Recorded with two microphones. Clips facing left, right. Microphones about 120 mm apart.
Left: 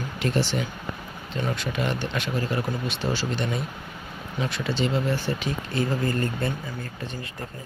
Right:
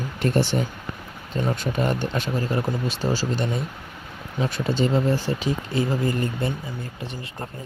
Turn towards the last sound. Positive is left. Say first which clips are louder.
# right 1 dB
turn(degrees=-20)  # may be behind; listen again after turning